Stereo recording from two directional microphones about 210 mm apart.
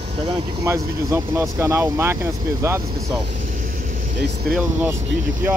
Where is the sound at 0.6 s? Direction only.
15° right (ahead or behind).